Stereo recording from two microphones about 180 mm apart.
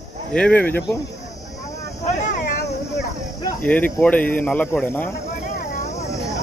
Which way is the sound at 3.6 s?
10° left (ahead or behind).